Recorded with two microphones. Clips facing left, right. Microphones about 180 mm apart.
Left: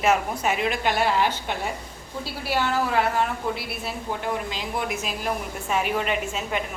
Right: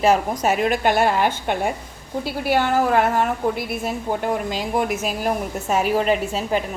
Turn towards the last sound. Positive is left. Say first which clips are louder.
# right 6 dB
turn(degrees=-35)  # may be behind; listen again after turning